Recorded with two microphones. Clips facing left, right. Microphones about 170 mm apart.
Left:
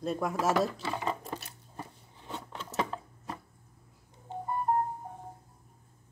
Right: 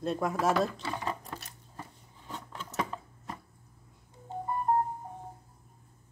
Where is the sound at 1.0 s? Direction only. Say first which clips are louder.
Left 2 dB; 25° left (ahead or behind).